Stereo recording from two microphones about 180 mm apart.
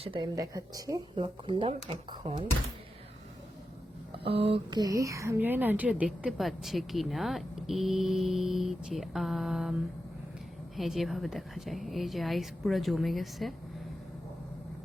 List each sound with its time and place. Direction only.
0.0 s speech: 25° right (ahead or behind)
4.2 s speech: 35° right (ahead or behind); by 9.7 s centre (ahead or behind)
10.8 s speech: centre (ahead or behind)